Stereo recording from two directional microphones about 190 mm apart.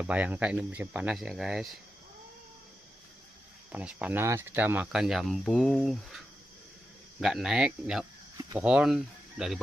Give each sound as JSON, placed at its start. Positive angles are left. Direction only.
{"t": 0.0, "sound": "speech", "side_deg": -10}
{"t": 3.7, "sound": "speech", "side_deg": -10}